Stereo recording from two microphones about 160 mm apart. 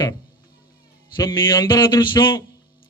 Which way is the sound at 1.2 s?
25° left (ahead or behind).